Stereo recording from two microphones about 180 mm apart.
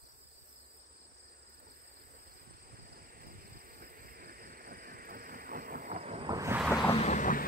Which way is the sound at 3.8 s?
55° right (ahead or behind).